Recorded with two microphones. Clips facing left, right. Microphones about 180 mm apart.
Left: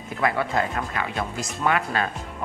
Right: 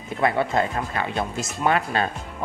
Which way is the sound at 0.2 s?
25° right (ahead or behind).